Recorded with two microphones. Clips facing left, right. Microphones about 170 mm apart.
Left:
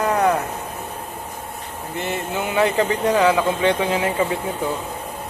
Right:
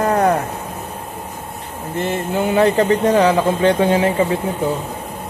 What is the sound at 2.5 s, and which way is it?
Speech, 40° right (ahead or behind).